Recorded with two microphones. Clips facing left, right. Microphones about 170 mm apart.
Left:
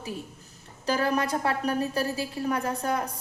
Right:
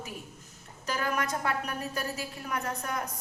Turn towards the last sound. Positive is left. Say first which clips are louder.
# left 6 dB
turn(degrees=30)  # may be behind; listen again after turning